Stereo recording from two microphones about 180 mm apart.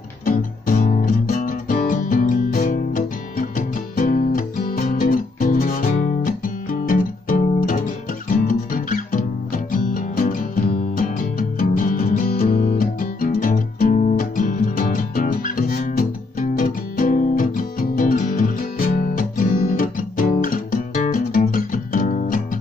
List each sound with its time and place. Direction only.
0.2 s music: 50° left (ahead or behind)